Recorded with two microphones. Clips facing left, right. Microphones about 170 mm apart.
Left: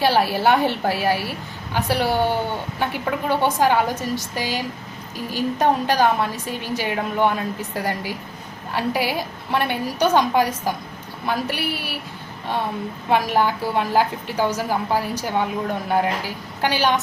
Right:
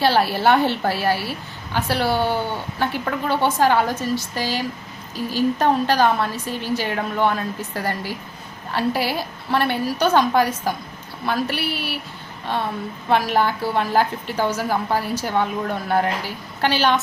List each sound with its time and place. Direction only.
0.0 s a woman's voice: 10° left (ahead or behind)
13.1 s a woman's voice: 15° left (ahead or behind)